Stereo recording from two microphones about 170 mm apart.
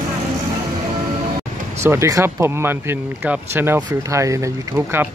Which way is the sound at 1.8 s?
15° right (ahead or behind).